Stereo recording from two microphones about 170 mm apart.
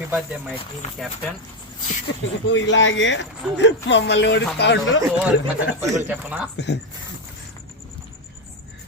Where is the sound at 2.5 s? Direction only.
90° left.